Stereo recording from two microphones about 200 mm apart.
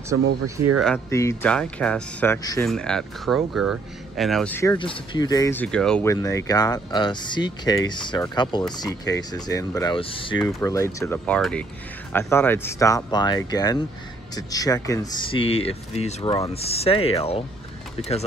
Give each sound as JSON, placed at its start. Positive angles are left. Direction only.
{"t": 0.7, "sound": "speech", "side_deg": 5}
{"t": 2.6, "sound": "speech", "side_deg": 5}
{"t": 4.7, "sound": "speech", "side_deg": 25}
{"t": 6.0, "sound": "speech", "side_deg": 15}
{"t": 10.6, "sound": "speech", "side_deg": 15}